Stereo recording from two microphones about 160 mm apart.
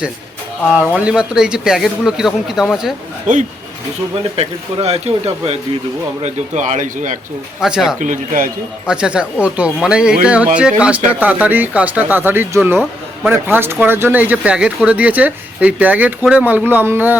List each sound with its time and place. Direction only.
0.7 s speech: 10° right (ahead or behind)
3.3 s speech: 50° right (ahead or behind)
4.4 s speech: 40° right (ahead or behind)
7.6 s speech: 5° right (ahead or behind)
7.9 s a man's voice: 55° right (ahead or behind)
8.9 s speech: 5° right (ahead or behind)